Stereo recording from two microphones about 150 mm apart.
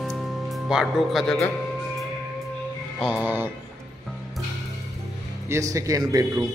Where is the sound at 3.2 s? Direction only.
15° right (ahead or behind).